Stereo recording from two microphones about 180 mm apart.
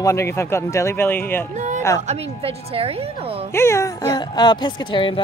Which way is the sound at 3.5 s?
15° left (ahead or behind).